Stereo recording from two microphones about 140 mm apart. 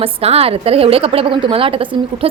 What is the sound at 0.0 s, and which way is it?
A woman's voice, 45° right (ahead or behind).